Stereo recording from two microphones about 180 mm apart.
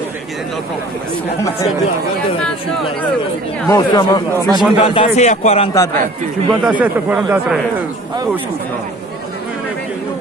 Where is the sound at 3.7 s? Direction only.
20° left (ahead or behind).